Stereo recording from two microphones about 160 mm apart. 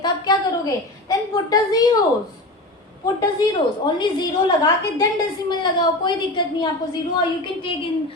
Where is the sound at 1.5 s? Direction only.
25° left (ahead or behind).